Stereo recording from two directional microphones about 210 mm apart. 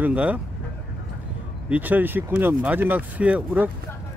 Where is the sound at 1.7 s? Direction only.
10° right (ahead or behind).